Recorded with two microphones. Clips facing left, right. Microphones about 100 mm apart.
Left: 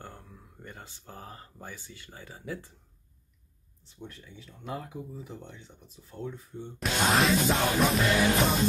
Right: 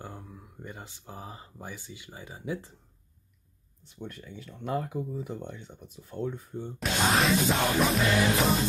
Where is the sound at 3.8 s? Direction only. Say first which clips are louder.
Right 4 dB; 60° right (ahead or behind).